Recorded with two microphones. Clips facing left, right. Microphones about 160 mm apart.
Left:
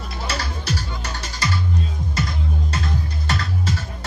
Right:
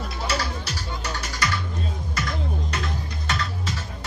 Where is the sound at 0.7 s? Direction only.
30° left (ahead or behind).